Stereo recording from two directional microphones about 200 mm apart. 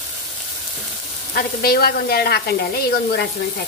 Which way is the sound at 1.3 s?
50° left (ahead or behind).